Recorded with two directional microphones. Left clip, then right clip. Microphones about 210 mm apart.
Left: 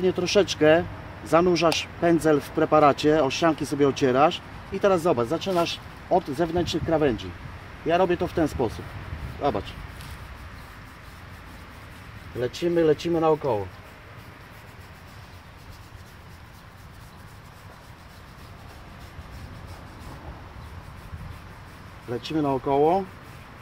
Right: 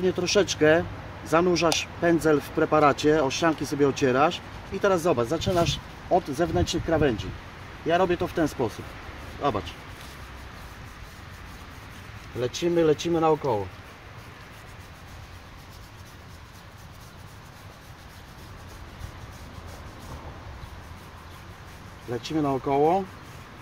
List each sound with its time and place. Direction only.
0.0 s speech: 20° left (ahead or behind)
12.4 s speech: 15° left (ahead or behind)
22.1 s speech: 15° left (ahead or behind)